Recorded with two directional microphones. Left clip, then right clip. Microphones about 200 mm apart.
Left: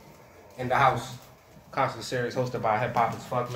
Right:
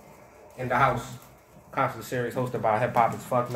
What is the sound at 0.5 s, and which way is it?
A man's voice, 5° right (ahead or behind).